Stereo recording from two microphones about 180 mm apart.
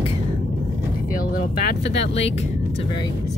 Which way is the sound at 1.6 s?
75° left (ahead or behind).